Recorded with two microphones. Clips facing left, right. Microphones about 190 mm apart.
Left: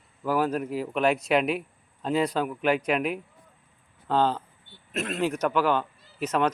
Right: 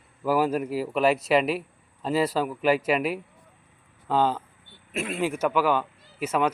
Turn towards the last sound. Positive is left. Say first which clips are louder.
# even
turn(degrees=-10)  # may be behind; listen again after turning